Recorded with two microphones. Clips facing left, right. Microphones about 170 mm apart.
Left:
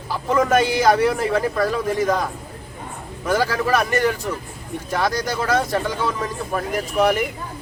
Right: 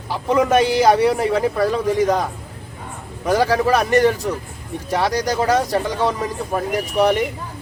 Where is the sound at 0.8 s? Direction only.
30° right (ahead or behind).